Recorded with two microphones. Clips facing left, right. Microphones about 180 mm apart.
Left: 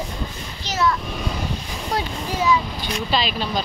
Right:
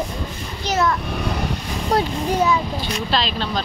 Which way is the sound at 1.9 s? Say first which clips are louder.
Right 6 dB; 55° right (ahead or behind).